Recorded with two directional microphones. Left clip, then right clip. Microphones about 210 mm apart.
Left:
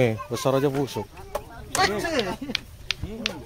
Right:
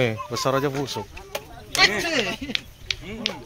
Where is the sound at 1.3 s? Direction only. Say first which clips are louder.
Right 3 dB; 35° left (ahead or behind).